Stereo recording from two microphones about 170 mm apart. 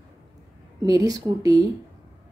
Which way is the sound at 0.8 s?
20° right (ahead or behind).